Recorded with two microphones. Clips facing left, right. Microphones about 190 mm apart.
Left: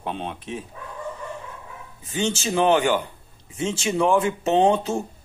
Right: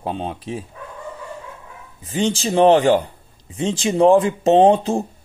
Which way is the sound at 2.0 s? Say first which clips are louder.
Right 4 dB; 35° right (ahead or behind).